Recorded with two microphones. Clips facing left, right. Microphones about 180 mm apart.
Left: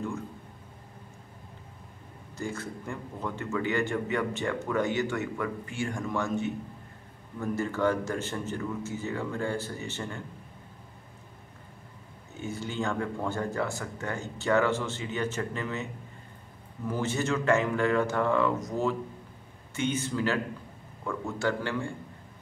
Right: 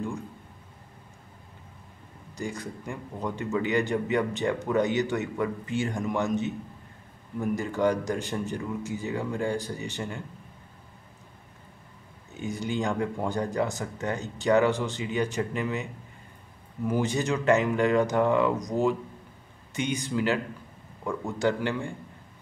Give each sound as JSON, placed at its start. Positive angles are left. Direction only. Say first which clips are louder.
{"t": 2.3, "sound": "a man's voice", "louder": "right 1 dB", "side_deg": -15}
{"t": 12.4, "sound": "speech", "louder": "right 3 dB", "side_deg": -15}